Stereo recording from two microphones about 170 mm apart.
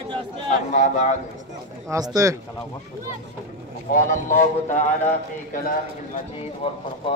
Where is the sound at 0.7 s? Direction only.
50° left (ahead or behind).